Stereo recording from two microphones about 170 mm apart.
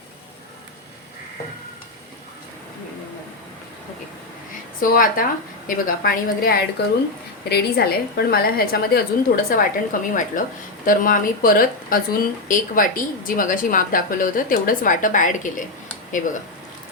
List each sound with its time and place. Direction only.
4.8 s a woman's voice: 55° left (ahead or behind)
6.8 s speech: 80° left
7.5 s a woman's voice: 65° left (ahead or behind); by 15.6 s 50° left (ahead or behind)